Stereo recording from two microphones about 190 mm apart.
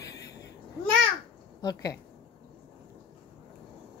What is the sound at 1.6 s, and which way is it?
Speech, 20° left (ahead or behind).